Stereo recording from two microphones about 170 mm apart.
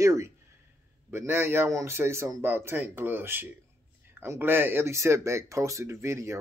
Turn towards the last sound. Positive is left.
turn(degrees=-15)  # may be behind; listen again after turning